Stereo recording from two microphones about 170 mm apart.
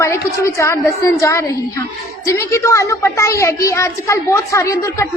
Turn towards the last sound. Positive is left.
turn(degrees=20)  # may be behind; listen again after turning